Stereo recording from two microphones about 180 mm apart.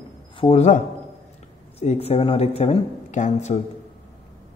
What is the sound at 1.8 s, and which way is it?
Speech, 35° left (ahead or behind).